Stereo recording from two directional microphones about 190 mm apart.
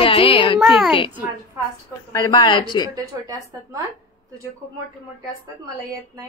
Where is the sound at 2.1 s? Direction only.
20° left (ahead or behind).